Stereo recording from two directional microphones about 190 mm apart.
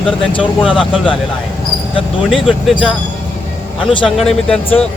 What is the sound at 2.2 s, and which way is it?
Speech, centre (ahead or behind).